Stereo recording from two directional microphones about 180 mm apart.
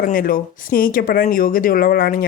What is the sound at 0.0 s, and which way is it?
Speech, 55° left (ahead or behind).